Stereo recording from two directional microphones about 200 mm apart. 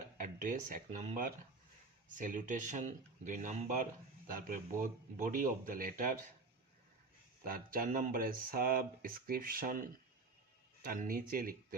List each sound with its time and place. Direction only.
0.2 s speech: 40° right (ahead or behind)
7.4 s speech: 45° right (ahead or behind)
10.8 s speech: 45° right (ahead or behind)